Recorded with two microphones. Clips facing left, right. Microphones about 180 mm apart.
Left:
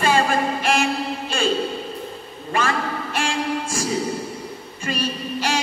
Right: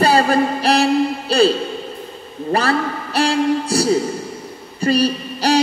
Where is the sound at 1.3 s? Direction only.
35° right (ahead or behind).